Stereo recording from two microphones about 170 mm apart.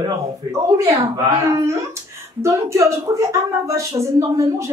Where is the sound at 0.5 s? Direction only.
20° right (ahead or behind).